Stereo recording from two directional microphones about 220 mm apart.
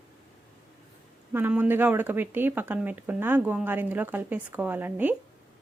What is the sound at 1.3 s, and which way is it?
Speech, 10° right (ahead or behind).